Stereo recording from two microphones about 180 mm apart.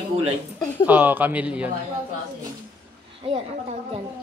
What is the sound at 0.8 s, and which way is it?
Speech, 10° right (ahead or behind).